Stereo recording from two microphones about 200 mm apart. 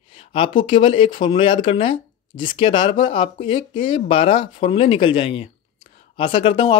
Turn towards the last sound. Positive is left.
turn(degrees=25)  # may be behind; listen again after turning